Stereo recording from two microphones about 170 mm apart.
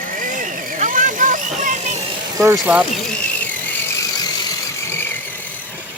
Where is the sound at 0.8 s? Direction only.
50° right (ahead or behind).